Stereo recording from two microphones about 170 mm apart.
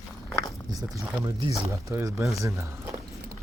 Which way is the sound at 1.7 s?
20° right (ahead or behind).